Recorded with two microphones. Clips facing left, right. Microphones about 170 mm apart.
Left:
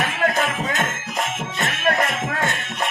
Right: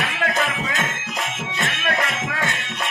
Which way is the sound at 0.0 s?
45° left (ahead or behind).